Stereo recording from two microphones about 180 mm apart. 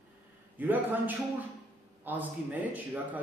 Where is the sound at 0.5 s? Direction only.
10° right (ahead or behind).